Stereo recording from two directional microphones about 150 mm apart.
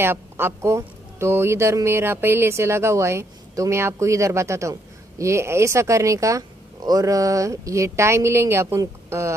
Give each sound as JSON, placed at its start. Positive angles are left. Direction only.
{"t": 0.0, "sound": "speech", "side_deg": -15}